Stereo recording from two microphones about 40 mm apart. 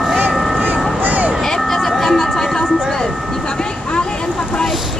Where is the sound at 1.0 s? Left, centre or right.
Right.